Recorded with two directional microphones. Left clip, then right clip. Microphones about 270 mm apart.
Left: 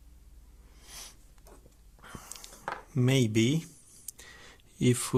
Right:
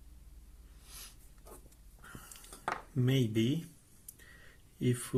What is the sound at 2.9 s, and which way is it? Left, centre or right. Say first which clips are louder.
Speech: left 7 dB; left.